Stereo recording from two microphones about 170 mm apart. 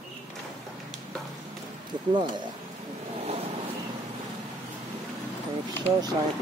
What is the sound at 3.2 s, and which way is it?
Vehicle, 40° right (ahead or behind).